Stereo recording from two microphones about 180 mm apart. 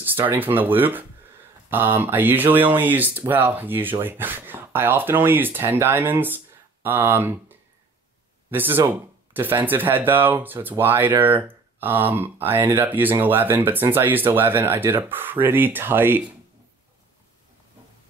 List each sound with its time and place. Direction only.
0.0 s speech: 10° right (ahead or behind)